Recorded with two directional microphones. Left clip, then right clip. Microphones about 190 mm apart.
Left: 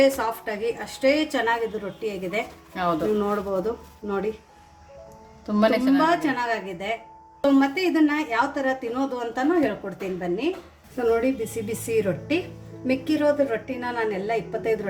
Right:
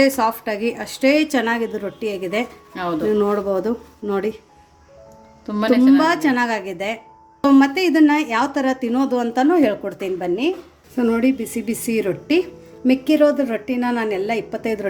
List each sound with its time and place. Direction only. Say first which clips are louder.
0.0 s a woman's voice: right 4 dB; 45° right (ahead or behind)
2.7 s a woman's voice: even; 10° right (ahead or behind)
3.2 s a woman's voice: right 6 dB; 50° right (ahead or behind)
5.5 s a woman's voice: right 5 dB; 10° right (ahead or behind)
6.0 s a woman's voice: right 4 dB; 50° right (ahead or behind)